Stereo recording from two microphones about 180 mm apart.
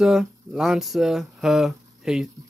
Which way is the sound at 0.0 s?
Centre (ahead or behind).